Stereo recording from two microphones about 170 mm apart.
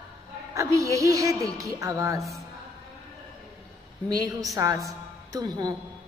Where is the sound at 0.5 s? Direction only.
20° right (ahead or behind).